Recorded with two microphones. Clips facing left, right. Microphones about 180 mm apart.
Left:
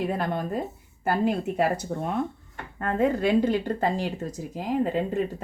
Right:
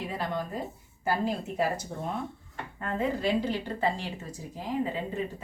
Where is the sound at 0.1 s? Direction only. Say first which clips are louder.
Left 5 dB; 55° left (ahead or behind).